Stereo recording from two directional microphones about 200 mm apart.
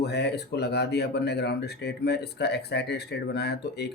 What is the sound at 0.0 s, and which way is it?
Speech, 55° left (ahead or behind).